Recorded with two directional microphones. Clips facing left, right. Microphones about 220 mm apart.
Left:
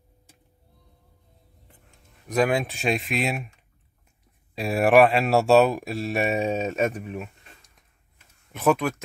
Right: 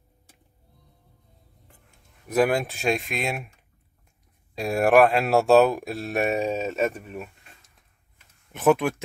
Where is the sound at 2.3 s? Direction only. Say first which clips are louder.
Right 1 dB; centre (ahead or behind).